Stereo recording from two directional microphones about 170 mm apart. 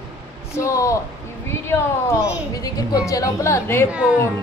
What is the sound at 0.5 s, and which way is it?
A woman's voice, 20° left (ahead or behind).